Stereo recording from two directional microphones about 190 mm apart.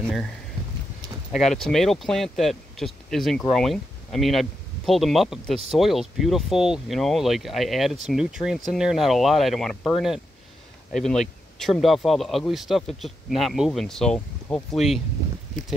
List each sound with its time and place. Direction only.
1.3 s speech: centre (ahead or behind)